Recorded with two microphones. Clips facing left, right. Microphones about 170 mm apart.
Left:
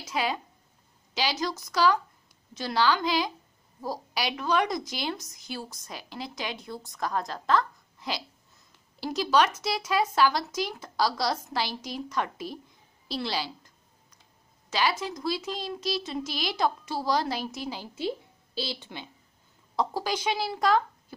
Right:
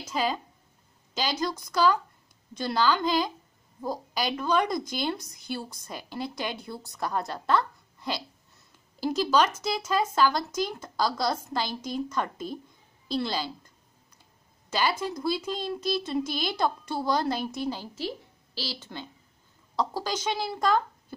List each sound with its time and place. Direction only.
0.1 s speech: centre (ahead or behind)
14.7 s a woman's voice: centre (ahead or behind)